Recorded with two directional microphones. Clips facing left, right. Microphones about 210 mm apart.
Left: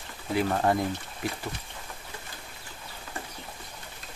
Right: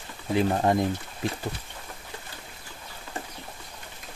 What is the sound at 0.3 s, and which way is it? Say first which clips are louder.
Speech: right 2 dB; 20° right (ahead or behind).